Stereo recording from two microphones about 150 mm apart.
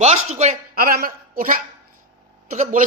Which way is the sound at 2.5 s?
55° right (ahead or behind).